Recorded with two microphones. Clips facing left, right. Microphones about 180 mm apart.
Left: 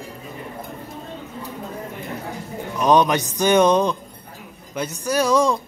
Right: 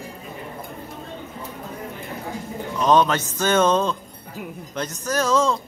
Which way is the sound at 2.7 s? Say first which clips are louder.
Left 1 dB; 15° left (ahead or behind).